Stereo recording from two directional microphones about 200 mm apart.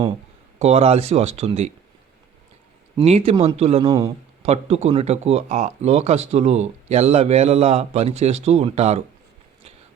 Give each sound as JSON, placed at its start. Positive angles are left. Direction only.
{"t": 0.6, "sound": "speech", "side_deg": -30}
{"t": 3.0, "sound": "speech", "side_deg": -30}